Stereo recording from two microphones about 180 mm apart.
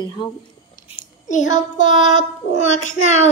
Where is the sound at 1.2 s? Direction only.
40° left (ahead or behind).